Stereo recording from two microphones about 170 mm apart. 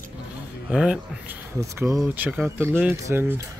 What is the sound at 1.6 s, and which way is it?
Speech, 15° right (ahead or behind).